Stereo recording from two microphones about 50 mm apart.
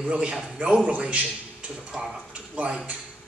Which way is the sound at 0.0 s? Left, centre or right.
Right.